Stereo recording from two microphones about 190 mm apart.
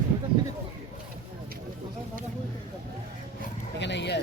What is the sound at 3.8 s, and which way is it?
Speech, 65° left (ahead or behind).